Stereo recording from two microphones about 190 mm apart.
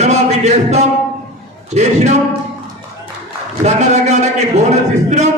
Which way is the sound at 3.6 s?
35° right (ahead or behind).